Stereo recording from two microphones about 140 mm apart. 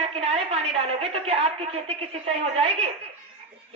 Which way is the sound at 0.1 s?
45° right (ahead or behind).